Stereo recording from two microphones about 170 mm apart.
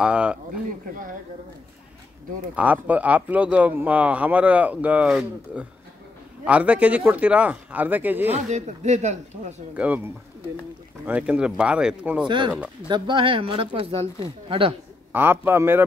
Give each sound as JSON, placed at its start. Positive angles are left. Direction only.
{"t": 0.0, "sound": "speech", "side_deg": -5}
{"t": 2.5, "sound": "speech", "side_deg": -10}
{"t": 8.3, "sound": "speech", "side_deg": -40}
{"t": 9.8, "sound": "speech", "side_deg": -10}
{"t": 12.8, "sound": "speech", "side_deg": -30}
{"t": 15.1, "sound": "speech", "side_deg": -10}